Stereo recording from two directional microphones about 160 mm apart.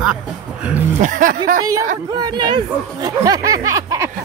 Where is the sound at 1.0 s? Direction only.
55° right (ahead or behind).